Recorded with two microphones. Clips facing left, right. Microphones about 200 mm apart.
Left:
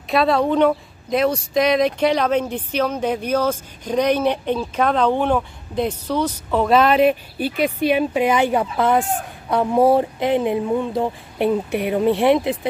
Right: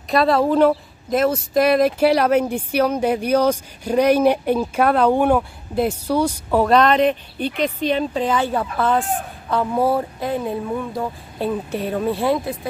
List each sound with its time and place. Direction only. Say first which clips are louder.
0.1 s speech: right 1 dB; centre (ahead or behind)
6.7 s speech: left 2 dB; 5° left (ahead or behind); by 12.5 s 20° left (ahead or behind)